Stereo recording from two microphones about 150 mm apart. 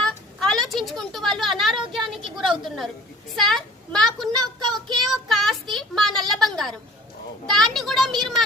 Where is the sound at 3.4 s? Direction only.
Centre (ahead or behind).